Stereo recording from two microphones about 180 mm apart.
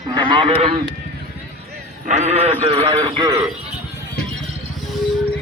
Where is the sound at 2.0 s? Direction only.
35° right (ahead or behind).